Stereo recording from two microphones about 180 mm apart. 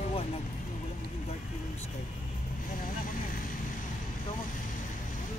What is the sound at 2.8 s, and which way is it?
Speech, 50° left (ahead or behind).